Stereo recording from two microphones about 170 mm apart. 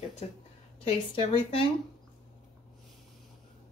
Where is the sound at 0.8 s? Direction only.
30° left (ahead or behind).